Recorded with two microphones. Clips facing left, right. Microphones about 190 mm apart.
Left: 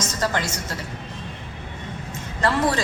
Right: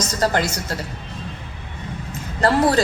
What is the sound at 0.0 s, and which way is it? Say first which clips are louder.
Speech: right 4 dB; 35° right (ahead or behind).